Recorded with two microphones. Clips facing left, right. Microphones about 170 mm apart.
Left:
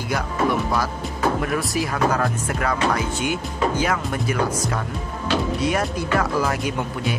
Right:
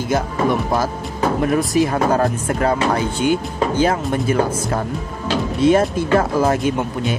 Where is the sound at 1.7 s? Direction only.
25° right (ahead or behind).